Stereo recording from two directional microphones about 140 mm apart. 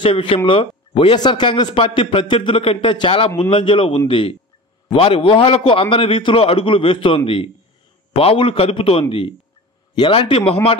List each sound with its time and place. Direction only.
0.0 s a man's voice: 40° left (ahead or behind)